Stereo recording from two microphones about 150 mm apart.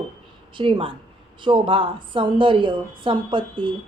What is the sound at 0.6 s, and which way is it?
A woman's voice, 35° right (ahead or behind).